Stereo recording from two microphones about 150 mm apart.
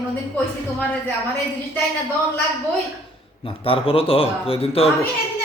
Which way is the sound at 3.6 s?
40° left (ahead or behind).